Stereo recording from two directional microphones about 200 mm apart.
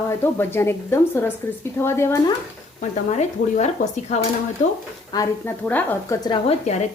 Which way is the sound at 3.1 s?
35° left (ahead or behind).